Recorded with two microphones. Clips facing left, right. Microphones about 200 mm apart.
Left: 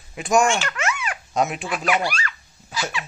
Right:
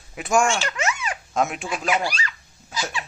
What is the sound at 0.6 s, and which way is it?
Babbling, 20° right (ahead or behind).